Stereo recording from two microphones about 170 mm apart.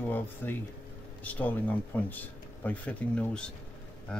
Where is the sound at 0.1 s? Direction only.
10° left (ahead or behind).